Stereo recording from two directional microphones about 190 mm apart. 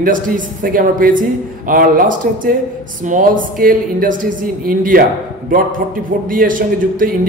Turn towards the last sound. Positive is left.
turn(degrees=-45)  # may be behind; listen again after turning